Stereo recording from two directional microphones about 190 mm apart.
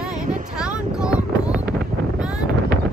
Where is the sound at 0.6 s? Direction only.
5° right (ahead or behind).